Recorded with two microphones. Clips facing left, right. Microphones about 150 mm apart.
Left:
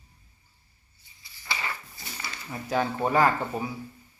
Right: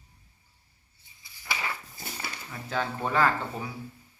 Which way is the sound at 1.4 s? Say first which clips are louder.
Even; 5° right (ahead or behind).